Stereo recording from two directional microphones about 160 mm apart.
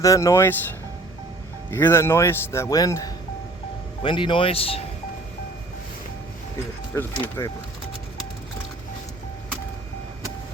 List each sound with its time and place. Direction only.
0.0 s speech: 20° left (ahead or behind)
1.7 s speech: 15° left (ahead or behind); by 4.8 s 35° left (ahead or behind)
6.9 s speech: 15° left (ahead or behind)